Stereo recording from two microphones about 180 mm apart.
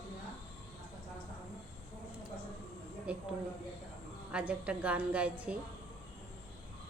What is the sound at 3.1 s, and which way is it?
Speech, 5° right (ahead or behind).